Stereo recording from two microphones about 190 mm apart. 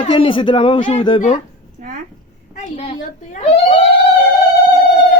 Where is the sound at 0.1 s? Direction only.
25° left (ahead or behind).